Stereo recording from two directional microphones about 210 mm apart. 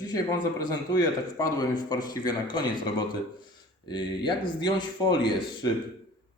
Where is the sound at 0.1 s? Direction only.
20° left (ahead or behind).